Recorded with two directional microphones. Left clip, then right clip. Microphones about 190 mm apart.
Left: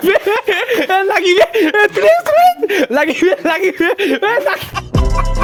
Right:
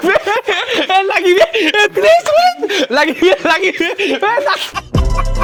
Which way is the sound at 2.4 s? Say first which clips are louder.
Left 1 dB; 45° left (ahead or behind).